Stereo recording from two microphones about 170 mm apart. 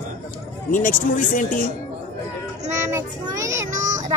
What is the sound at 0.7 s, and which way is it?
Speech, 50° left (ahead or behind).